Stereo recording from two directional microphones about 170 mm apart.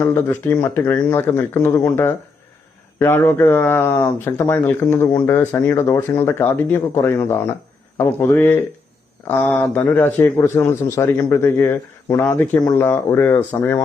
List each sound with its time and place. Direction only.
0.0 s speech: 15° left (ahead or behind)